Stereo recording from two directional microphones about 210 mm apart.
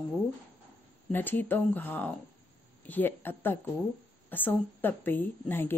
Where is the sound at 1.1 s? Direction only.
10° left (ahead or behind).